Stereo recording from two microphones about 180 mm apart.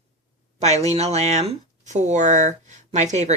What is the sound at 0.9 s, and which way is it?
Speech, 35° right (ahead or behind).